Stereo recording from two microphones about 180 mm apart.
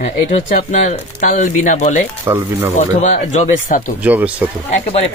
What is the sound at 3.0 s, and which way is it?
Speech, 40° left (ahead or behind).